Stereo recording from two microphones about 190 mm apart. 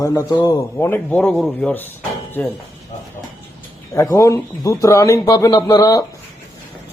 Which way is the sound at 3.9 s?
15° left (ahead or behind).